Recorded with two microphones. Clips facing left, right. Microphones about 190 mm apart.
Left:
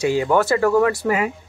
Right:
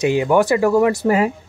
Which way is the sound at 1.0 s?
30° right (ahead or behind).